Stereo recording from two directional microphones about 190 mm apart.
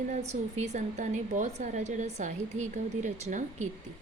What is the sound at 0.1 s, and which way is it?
A woman's voice, 35° right (ahead or behind).